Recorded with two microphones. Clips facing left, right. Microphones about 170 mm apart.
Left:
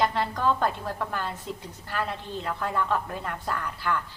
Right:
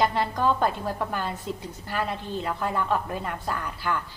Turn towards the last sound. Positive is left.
turn(degrees=-10)  # may be behind; listen again after turning